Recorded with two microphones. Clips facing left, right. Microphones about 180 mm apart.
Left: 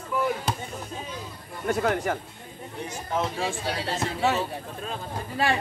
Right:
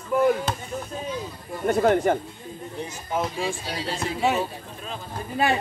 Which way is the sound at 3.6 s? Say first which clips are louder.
Left 1 dB; 60° left (ahead or behind).